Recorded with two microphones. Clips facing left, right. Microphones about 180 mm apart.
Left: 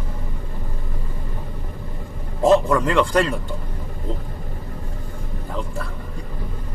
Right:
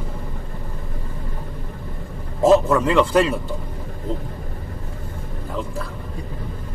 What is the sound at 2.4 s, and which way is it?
Speech, 5° right (ahead or behind).